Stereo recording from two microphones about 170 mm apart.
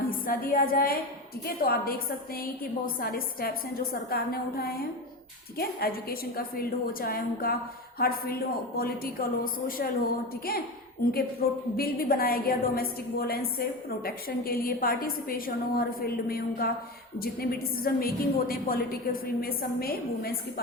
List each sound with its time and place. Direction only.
0.1 s a woman's voice: 55° left (ahead or behind)
11.4 s a woman's voice: 65° left (ahead or behind)